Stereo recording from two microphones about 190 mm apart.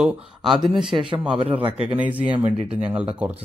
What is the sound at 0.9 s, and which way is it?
Speech, 25° right (ahead or behind).